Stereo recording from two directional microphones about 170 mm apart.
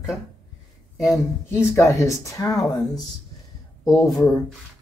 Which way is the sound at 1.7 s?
15° left (ahead or behind).